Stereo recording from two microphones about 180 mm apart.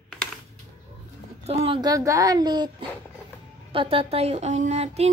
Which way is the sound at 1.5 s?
35° right (ahead or behind).